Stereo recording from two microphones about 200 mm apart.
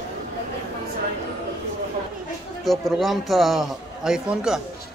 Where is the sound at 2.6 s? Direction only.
Centre (ahead or behind).